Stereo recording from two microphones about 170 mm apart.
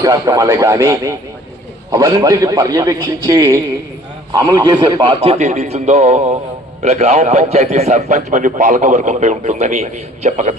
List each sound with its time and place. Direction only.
0.0 s a man's voice: 20° right (ahead or behind)
5.2 s a man's voice: 40° right (ahead or behind)